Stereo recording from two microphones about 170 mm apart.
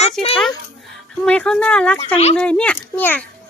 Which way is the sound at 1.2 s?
5° left (ahead or behind).